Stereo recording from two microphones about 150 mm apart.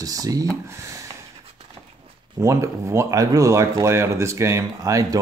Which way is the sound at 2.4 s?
20° right (ahead or behind).